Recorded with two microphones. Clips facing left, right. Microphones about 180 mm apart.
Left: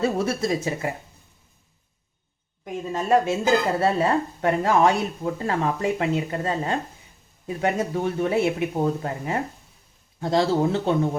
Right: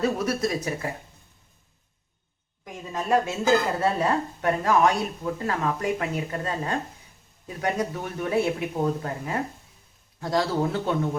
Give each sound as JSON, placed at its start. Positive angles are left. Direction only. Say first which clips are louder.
{"t": 0.0, "sound": "speech", "louder": "left 1 dB", "side_deg": 25}
{"t": 2.9, "sound": "speech", "louder": "left 3 dB", "side_deg": 25}